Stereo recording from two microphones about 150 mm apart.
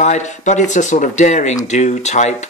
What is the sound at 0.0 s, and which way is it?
Speech, 50° left (ahead or behind).